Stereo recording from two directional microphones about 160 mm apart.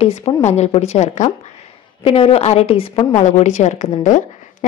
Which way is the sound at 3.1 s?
50° left (ahead or behind).